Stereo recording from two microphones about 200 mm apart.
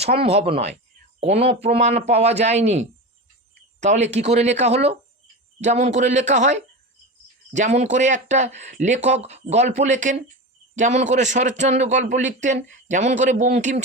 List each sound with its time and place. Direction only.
0.0 s speech: 30° right (ahead or behind)